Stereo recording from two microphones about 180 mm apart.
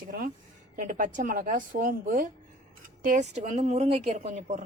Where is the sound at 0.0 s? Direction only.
50° right (ahead or behind).